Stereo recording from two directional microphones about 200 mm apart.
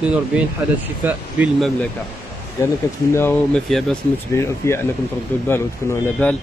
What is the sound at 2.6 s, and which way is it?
Speech, 15° left (ahead or behind).